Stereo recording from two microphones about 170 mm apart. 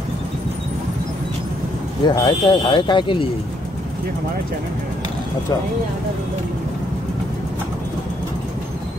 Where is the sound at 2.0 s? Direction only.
25° left (ahead or behind).